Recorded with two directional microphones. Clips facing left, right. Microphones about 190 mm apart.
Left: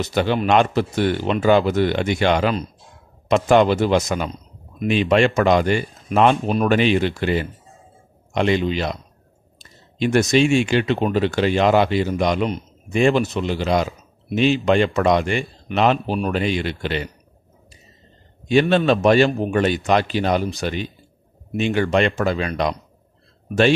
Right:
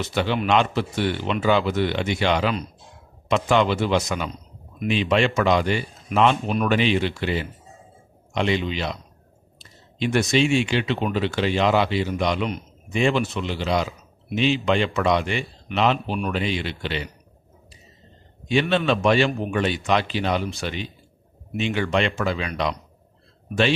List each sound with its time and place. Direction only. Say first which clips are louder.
0.0 s speech: left 4 dB; 45° left (ahead or behind)
18.5 s speech: left 5 dB; 45° left (ahead or behind)